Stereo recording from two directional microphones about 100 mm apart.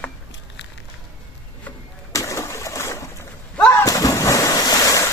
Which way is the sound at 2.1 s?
30° left (ahead or behind).